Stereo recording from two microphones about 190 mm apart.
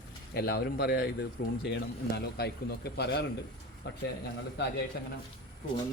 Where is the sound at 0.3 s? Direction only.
55° left (ahead or behind).